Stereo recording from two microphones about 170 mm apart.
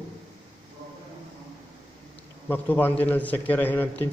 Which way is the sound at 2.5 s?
10° left (ahead or behind).